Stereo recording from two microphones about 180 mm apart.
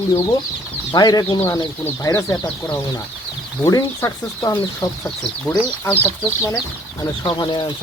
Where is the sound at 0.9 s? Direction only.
20° left (ahead or behind).